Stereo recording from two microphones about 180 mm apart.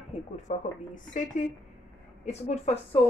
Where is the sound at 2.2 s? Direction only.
35° left (ahead or behind).